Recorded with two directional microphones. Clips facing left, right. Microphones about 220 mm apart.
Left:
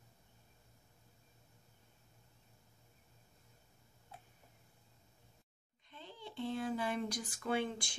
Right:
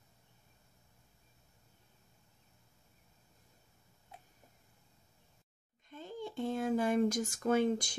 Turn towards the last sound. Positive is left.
turn(degrees=-40)  # may be behind; listen again after turning